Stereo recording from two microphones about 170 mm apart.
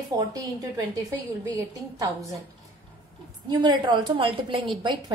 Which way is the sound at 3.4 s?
25° right (ahead or behind).